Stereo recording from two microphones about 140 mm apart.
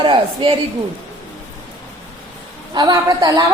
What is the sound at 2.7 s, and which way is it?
Speech, 30° right (ahead or behind).